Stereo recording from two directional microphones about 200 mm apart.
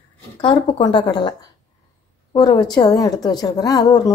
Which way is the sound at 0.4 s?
25° left (ahead or behind).